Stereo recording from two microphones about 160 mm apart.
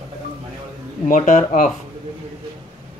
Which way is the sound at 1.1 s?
50° left (ahead or behind).